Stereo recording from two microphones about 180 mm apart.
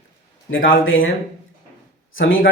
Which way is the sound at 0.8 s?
90° left.